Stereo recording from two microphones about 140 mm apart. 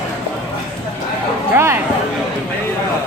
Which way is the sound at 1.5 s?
20° right (ahead or behind).